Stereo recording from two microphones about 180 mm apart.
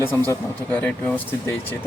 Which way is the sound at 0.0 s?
10° left (ahead or behind).